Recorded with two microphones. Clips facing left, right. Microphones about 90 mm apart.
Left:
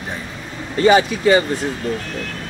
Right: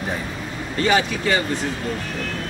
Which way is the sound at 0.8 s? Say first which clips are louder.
Left 6 dB; 20° left (ahead or behind).